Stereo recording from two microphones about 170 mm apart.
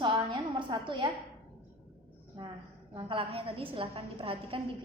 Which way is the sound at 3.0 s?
30° right (ahead or behind).